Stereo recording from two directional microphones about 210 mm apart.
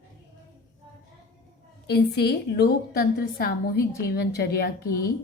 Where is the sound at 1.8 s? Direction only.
50° left (ahead or behind).